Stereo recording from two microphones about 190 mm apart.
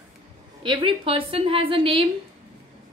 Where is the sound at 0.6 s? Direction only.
25° right (ahead or behind).